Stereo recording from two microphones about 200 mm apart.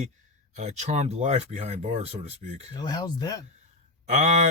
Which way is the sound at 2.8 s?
20° left (ahead or behind).